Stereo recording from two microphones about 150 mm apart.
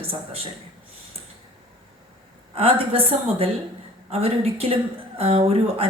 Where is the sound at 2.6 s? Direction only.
40° right (ahead or behind).